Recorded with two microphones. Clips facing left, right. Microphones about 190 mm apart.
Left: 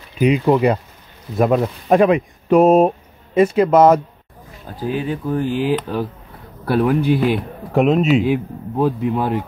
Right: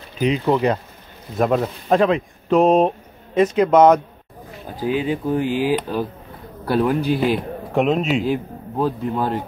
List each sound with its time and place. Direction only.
0.2 s a man's voice: 10° left (ahead or behind)
1.9 s a man's voice: 15° left (ahead or behind)
4.7 s speech: 15° right (ahead or behind)
5.5 s a man's voice: 5° right (ahead or behind)